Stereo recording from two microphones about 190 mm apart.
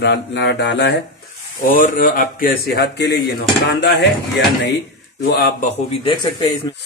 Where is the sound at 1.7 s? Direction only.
45° left (ahead or behind).